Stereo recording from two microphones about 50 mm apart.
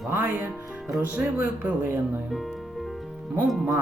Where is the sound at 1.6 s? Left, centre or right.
Right.